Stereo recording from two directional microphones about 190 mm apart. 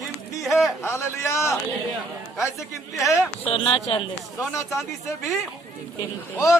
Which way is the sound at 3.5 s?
30° left (ahead or behind).